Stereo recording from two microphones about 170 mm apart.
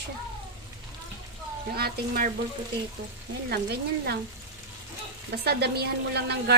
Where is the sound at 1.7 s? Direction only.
70° right (ahead or behind).